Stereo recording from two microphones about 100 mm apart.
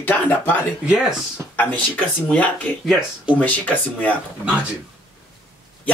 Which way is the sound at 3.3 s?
15° left (ahead or behind).